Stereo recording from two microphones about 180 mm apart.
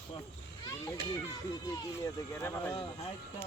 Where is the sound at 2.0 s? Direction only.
15° left (ahead or behind).